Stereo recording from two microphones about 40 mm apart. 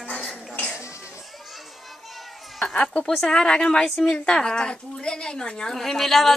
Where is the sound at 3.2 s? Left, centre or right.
Centre.